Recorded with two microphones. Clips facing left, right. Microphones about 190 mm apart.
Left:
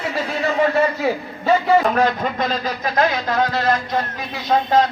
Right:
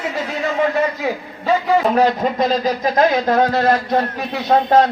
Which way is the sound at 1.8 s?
30° right (ahead or behind).